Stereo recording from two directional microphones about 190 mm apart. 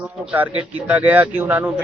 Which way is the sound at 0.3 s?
10° right (ahead or behind).